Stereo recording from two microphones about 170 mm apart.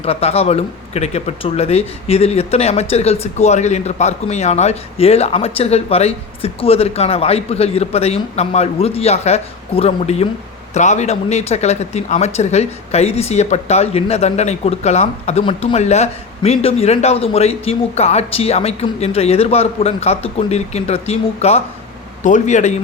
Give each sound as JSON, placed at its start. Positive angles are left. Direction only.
{"t": 0.0, "sound": "a man's voice", "side_deg": 35}